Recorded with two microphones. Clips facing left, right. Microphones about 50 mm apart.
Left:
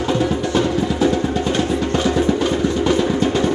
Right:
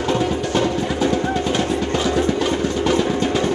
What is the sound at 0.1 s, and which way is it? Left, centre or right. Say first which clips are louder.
Music: left 1 dB; centre.